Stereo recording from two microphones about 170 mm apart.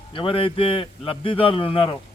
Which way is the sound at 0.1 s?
30° left (ahead or behind).